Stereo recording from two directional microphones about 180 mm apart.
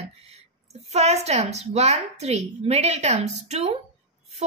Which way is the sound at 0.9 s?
35° right (ahead or behind).